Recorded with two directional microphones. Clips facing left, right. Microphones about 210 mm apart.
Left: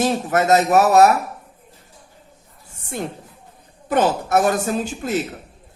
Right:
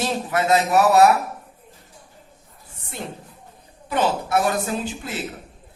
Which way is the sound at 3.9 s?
50° left (ahead or behind).